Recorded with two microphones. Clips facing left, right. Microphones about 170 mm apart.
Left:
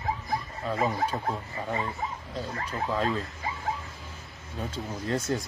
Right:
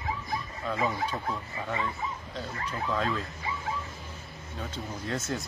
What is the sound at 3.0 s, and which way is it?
Speech, 35° left (ahead or behind).